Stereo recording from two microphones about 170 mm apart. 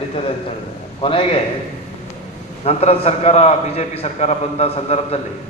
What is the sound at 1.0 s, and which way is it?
Speech, 30° left (ahead or behind).